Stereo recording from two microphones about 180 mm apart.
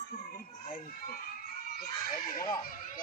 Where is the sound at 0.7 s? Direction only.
55° left (ahead or behind).